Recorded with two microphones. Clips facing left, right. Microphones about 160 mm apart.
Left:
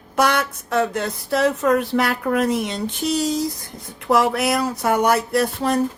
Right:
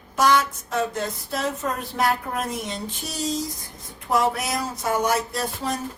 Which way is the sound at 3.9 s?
75° left (ahead or behind).